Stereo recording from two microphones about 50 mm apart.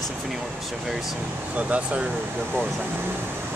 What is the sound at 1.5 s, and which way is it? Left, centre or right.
Speech, right.